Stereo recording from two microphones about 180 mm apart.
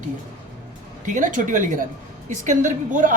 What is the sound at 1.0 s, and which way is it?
A woman's voice, 45° right (ahead or behind).